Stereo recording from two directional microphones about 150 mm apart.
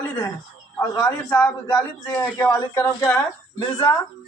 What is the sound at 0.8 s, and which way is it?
A man's voice, 10° left (ahead or behind).